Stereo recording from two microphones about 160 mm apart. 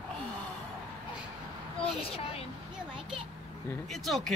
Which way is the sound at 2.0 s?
35° left (ahead or behind).